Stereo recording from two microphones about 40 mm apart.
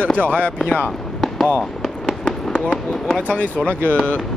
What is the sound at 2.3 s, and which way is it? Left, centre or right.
Fireworks, left.